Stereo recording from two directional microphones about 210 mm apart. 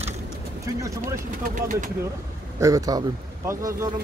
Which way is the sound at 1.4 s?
35° right (ahead or behind).